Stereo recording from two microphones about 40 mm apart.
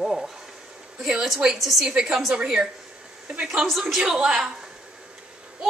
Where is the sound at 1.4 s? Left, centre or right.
Centre.